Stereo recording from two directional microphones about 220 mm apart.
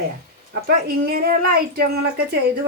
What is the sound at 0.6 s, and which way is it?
Speech, 45° right (ahead or behind).